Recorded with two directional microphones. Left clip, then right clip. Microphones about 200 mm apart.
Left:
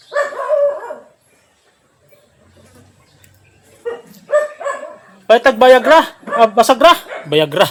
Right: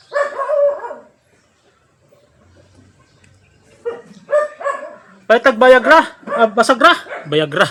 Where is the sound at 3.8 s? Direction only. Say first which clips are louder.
Even; 10° right (ahead or behind).